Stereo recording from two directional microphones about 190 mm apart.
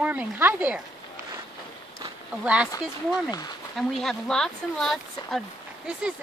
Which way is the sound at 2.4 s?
5° right (ahead or behind).